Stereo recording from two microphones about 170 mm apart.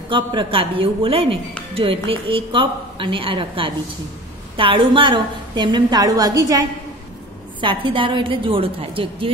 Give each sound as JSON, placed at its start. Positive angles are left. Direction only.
{"t": 0.1, "sound": "a woman's voice", "side_deg": -30}
{"t": 7.6, "sound": "a woman's voice", "side_deg": -30}